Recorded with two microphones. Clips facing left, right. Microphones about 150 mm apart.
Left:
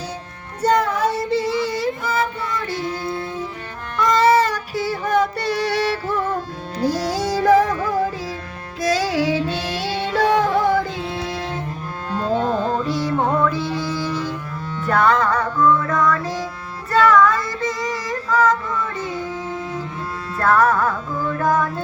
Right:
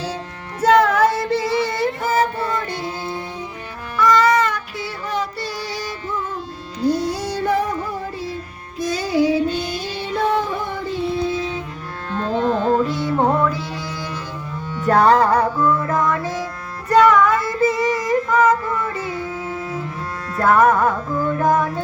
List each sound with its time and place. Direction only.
0.6 s child singing: 90° right; by 1.9 s 75° right (ahead or behind)
2.0 s music: 45° right (ahead or behind)
4.0 s child singing: 25° left (ahead or behind); by 8.4 s 90° left
8.8 s music: 90° left
12.1 s music: 5° left (ahead or behind)
14.8 s music: 35° right (ahead or behind)
16.2 s music: centre (ahead or behind)
16.9 s child singing: centre (ahead or behind)
19.5 s cello: 5° right (ahead or behind)
20.5 s music: 5° right (ahead or behind)
21.4 s music: 20° right (ahead or behind)